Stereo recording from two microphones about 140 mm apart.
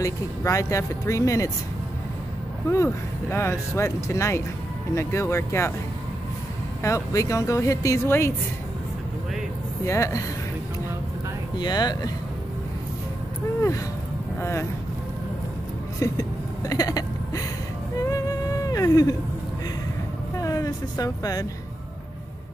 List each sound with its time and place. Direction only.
0.0 s speech: 20° left (ahead or behind)
2.7 s speech: 20° left (ahead or behind)
6.8 s speech: 20° left (ahead or behind)
9.8 s speech: 20° left (ahead or behind)
11.5 s speech: 30° left (ahead or behind)
14.4 s speech: 20° left (ahead or behind)
16.0 s hiccup: 25° left (ahead or behind)
18.0 s music: 25° left (ahead or behind)
20.3 s speech: 25° left (ahead or behind)